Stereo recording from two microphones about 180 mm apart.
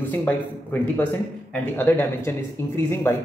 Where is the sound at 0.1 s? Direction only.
10° left (ahead or behind).